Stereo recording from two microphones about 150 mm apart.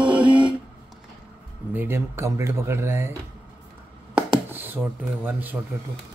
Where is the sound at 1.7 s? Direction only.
15° right (ahead or behind).